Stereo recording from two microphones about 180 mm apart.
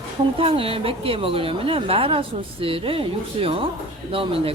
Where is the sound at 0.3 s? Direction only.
30° right (ahead or behind).